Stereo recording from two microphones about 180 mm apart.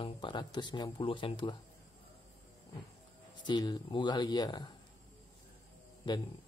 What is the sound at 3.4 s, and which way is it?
A man's voice, 25° left (ahead or behind).